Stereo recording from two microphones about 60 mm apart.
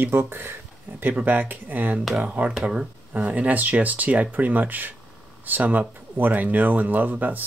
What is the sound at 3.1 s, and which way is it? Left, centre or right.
Speech, right.